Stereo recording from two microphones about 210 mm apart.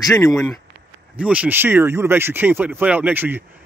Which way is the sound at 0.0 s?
15° left (ahead or behind).